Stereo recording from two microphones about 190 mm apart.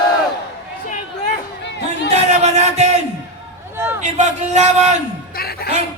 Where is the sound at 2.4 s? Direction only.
35° right (ahead or behind).